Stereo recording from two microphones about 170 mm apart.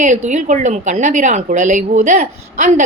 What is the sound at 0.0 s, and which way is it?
A woman's voice, 45° right (ahead or behind).